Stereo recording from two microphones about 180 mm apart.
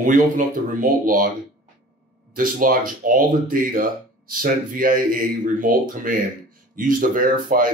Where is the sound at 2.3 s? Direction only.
50° right (ahead or behind).